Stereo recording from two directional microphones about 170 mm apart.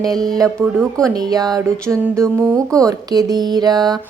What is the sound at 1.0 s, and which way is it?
A woman's voice, 20° right (ahead or behind).